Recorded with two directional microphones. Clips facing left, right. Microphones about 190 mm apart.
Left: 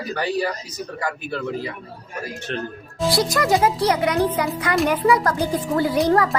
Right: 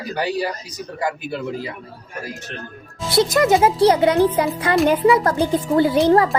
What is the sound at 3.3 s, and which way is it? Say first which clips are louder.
Speech: right 3 dB; 25° right (ahead or behind).